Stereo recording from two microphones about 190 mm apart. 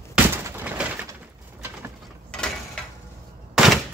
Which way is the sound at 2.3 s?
5° left (ahead or behind).